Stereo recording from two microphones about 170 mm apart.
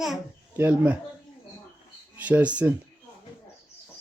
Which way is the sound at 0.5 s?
10° right (ahead or behind).